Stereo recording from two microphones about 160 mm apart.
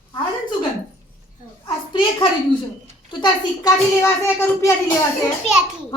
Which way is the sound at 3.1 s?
25° left (ahead or behind).